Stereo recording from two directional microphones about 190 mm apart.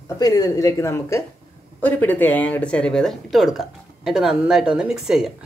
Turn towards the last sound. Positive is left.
turn(degrees=-5)  # may be behind; listen again after turning